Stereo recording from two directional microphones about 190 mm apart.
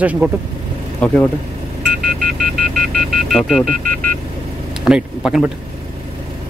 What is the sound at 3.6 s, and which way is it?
Speech, 50° right (ahead or behind).